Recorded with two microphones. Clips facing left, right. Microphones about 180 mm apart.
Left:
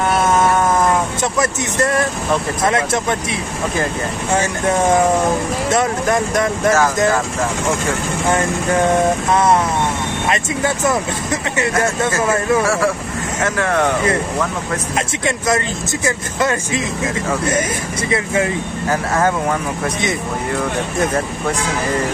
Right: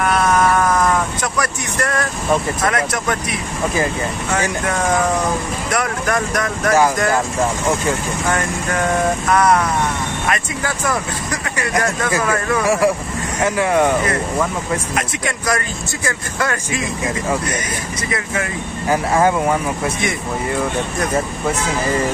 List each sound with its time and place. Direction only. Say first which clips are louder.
0.0 s a sound: left 1 dB; 25° left (ahead or behind)
2.6 s speech: left 2 dB; 25° left (ahead or behind)
4.3 s speech: left 4 dB; 25° left (ahead or behind)
9.3 s speech: right 2 dB; 25° left (ahead or behind)
13.6 s speech: right 2 dB; 10° right (ahead or behind)
15.0 s speech: left 2 dB; 25° left (ahead or behind)
18.1 s speech: left 6 dB; 25° left (ahead or behind)
18.9 s speech: right 2 dB; 10° right (ahead or behind)